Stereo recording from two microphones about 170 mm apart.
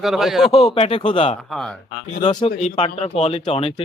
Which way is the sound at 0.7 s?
35° left (ahead or behind).